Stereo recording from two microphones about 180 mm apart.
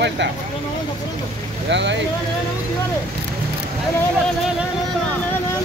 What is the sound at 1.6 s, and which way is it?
Speech, 80° right.